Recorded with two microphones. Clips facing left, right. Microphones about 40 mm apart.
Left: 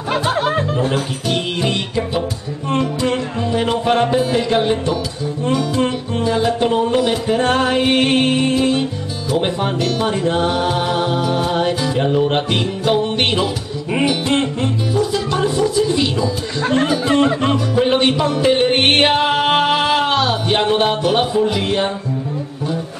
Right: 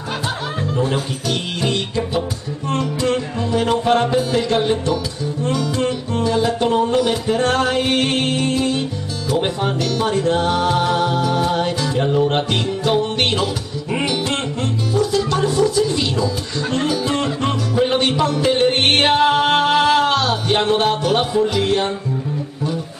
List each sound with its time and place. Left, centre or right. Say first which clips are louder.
1.6 s music: left 1 dB; centre
9.3 s speech: left 1 dB; centre
13.9 s music: left 4 dB; centre
16.7 s speech: left 4 dB; left
17.5 s music: left 2 dB; centre